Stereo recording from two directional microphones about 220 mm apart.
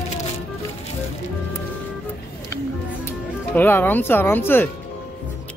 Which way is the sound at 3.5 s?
10° left (ahead or behind).